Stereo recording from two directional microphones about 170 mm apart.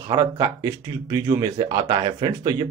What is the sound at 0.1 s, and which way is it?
Speech, 20° right (ahead or behind).